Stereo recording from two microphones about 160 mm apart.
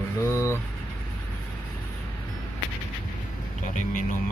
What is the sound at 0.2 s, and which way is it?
Vehicle, 15° left (ahead or behind).